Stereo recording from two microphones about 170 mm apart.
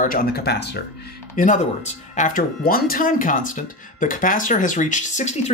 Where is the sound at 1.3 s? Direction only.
50° left (ahead or behind).